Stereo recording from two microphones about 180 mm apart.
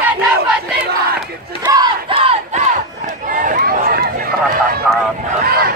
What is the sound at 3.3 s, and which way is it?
Run, 45° right (ahead or behind).